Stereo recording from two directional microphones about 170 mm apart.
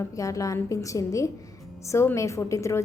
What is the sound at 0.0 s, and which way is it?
A woman's voice, 20° left (ahead or behind).